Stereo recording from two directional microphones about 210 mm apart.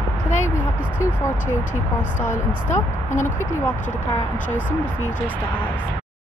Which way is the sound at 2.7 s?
35° left (ahead or behind).